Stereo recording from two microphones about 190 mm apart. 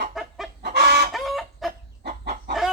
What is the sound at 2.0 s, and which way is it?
Chicken, 55° right (ahead or behind).